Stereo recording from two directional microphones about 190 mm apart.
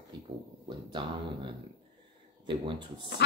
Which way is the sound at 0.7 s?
25° right (ahead or behind).